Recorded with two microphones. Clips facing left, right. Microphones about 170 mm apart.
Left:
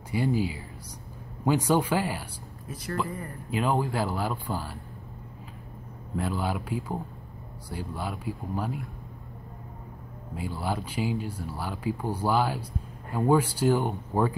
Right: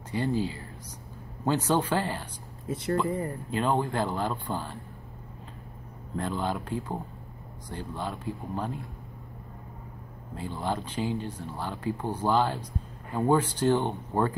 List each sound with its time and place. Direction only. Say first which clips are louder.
0.1 s speech: left 1 dB; 10° left (ahead or behind)
2.7 s speech: right 5 dB; 25° right (ahead or behind)
3.4 s speech: left 2 dB; 5° left (ahead or behind)
6.1 s speech: left 1 dB; 10° left (ahead or behind)
10.3 s speech: even; 10° left (ahead or behind)